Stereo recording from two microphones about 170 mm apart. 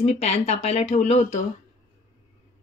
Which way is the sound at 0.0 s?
40° left (ahead or behind).